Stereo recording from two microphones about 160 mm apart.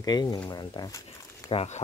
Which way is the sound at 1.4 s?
40° left (ahead or behind).